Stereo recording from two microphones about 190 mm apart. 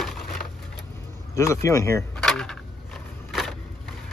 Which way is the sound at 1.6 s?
15° left (ahead or behind).